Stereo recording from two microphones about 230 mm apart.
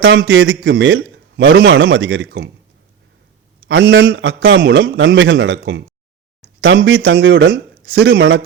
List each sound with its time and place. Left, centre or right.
0.0 s a man's voice: right
3.7 s a man's voice: right